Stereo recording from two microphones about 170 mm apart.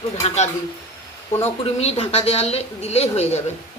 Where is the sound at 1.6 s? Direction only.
35° left (ahead or behind).